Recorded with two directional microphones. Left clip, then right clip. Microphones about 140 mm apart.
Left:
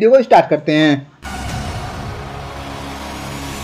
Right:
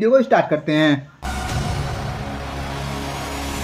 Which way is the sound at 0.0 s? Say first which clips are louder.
Left 6 dB; 30° left (ahead or behind).